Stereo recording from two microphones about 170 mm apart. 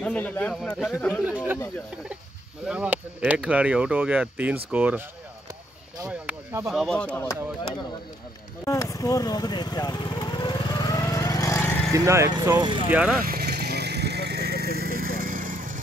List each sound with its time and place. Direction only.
0.0 s speech: 10° left (ahead or behind)
1.2 s speech: 10° right (ahead or behind)
2.6 s speech: 5° right (ahead or behind)
6.0 s a sound: 10° right (ahead or behind)
6.7 s speech: 5° left (ahead or behind)
8.6 s vehicle: 20° left (ahead or behind)
11.9 s speech: 15° right (ahead or behind)
12.9 s speech: 5° right (ahead or behind)
13.2 s vehicle: 65° right (ahead or behind)